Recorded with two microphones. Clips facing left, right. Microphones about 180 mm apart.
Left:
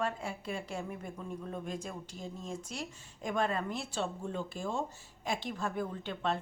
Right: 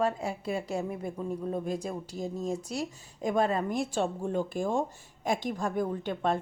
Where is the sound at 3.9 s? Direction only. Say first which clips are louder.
Right 7 dB; 50° right (ahead or behind).